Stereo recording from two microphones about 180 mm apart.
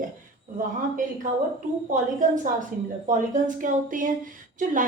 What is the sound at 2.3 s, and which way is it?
A woman's voice, 45° right (ahead or behind).